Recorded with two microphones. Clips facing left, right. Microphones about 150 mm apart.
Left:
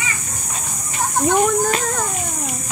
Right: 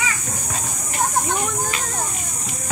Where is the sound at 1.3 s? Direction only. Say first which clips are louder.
Left 8 dB; 45° left (ahead or behind).